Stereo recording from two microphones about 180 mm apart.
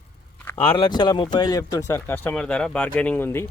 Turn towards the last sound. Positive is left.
turn(degrees=10)  # may be behind; listen again after turning